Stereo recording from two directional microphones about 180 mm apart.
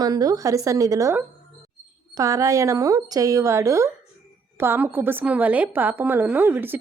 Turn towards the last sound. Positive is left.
turn(degrees=-10)  # may be behind; listen again after turning